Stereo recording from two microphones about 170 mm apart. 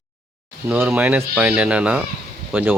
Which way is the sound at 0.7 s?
10° right (ahead or behind).